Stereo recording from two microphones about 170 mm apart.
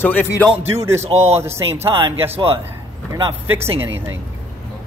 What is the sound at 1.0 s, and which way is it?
Speech, 40° right (ahead or behind).